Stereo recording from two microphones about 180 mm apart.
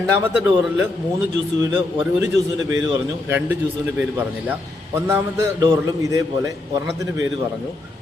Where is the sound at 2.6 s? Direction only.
20° right (ahead or behind).